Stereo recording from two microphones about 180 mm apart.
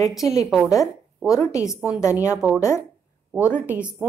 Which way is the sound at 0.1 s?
Centre (ahead or behind).